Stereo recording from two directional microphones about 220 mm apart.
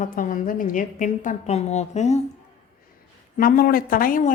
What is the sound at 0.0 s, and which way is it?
A woman's voice, 35° left (ahead or behind).